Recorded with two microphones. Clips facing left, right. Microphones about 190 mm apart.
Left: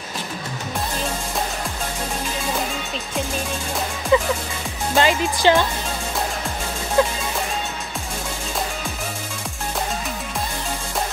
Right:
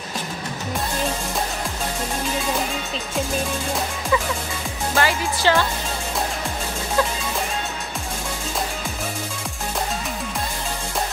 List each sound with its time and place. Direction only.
4.1 s music: 25° left (ahead or behind)
7.0 s music: 20° left (ahead or behind)